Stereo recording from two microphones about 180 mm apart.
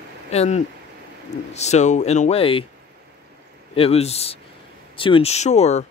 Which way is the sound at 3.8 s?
35° left (ahead or behind).